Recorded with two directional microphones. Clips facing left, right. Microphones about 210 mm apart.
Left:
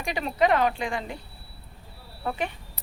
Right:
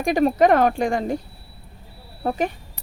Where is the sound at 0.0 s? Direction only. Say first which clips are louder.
Right 8 dB; 50° right (ahead or behind).